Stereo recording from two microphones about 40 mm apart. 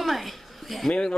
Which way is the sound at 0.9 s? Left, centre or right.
Left.